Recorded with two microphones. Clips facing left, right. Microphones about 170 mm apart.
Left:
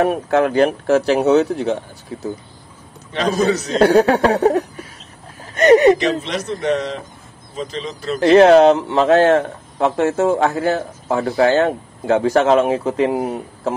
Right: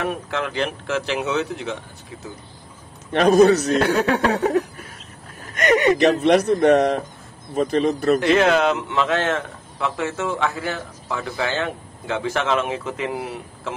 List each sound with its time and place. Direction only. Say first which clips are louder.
0.0 s speech: left 10 dB; 40° left (ahead or behind)
3.1 s speech: right 4 dB; 55° right (ahead or behind)
3.8 s speech: left 7 dB; 35° left (ahead or behind)
5.4 s a sound: left 8 dB; 35° left (ahead or behind)
5.9 s speech: right 5 dB; 60° right (ahead or behind)
8.2 s speech: left 13 dB; 35° left (ahead or behind)